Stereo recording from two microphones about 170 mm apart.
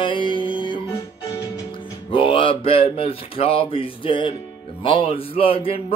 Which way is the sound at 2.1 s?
30° left (ahead or behind).